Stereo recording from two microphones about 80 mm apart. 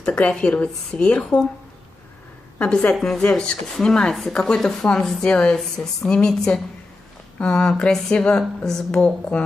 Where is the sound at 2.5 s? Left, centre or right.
Centre.